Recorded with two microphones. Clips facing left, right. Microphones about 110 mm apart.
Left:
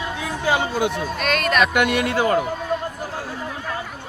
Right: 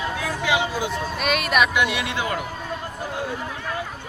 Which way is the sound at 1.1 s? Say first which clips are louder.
Even; 5° right (ahead or behind).